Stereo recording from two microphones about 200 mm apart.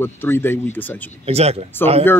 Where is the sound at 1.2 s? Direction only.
30° right (ahead or behind).